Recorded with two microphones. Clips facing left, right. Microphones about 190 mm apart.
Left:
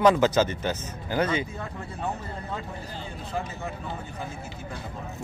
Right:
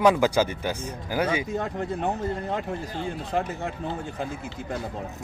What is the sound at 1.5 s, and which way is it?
Speech, 75° right (ahead or behind).